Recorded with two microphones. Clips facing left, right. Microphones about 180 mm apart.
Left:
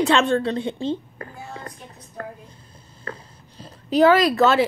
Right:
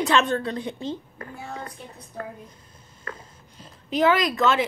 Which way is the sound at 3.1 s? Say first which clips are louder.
Left 3 dB; 30° left (ahead or behind).